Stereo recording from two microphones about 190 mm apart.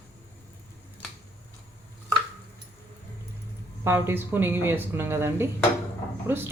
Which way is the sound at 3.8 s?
15° right (ahead or behind).